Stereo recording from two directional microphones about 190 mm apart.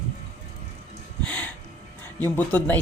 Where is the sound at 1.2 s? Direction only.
5° left (ahead or behind).